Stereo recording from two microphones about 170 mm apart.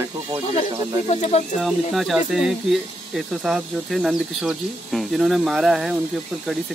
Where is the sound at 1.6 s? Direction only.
Centre (ahead or behind).